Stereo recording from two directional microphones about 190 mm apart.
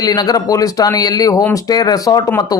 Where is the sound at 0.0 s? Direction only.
20° left (ahead or behind).